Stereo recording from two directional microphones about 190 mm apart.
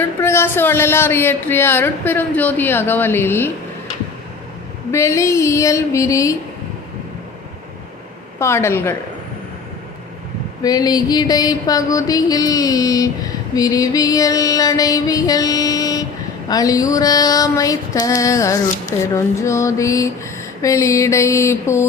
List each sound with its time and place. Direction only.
0.0 s speech: 15° left (ahead or behind)
4.9 s speech: 15° left (ahead or behind)
8.4 s speech: 15° left (ahead or behind)
10.6 s music: 20° left (ahead or behind)
19.1 s speech: 15° left (ahead or behind)